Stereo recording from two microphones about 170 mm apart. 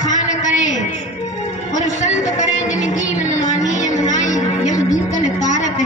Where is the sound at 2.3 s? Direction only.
45° left (ahead or behind).